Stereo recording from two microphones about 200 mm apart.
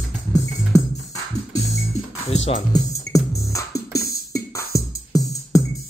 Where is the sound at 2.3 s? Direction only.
35° left (ahead or behind).